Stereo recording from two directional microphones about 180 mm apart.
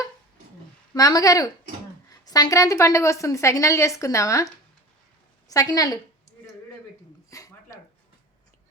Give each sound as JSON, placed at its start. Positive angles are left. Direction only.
{"t": 0.9, "sound": "a woman's voice", "side_deg": 20}
{"t": 5.5, "sound": "speech", "side_deg": 20}
{"t": 7.3, "sound": "a sound", "side_deg": 20}